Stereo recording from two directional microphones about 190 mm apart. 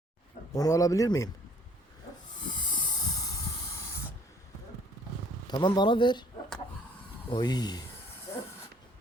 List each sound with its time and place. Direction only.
0.5 s speech: 20° left (ahead or behind)
2.6 s hiss: 25° left (ahead or behind)
5.5 s speech: 20° left (ahead or behind)
7.3 s speech: 20° left (ahead or behind)